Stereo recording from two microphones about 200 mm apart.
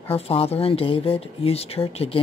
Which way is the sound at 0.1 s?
30° left (ahead or behind).